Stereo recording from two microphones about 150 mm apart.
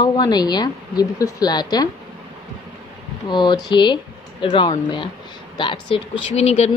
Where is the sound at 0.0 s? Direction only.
25° left (ahead or behind).